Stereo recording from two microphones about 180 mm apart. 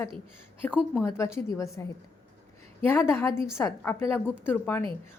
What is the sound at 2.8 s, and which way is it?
A woman's voice, 15° left (ahead or behind).